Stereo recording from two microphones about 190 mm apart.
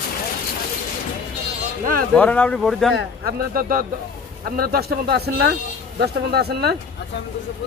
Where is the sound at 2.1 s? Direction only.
10° left (ahead or behind).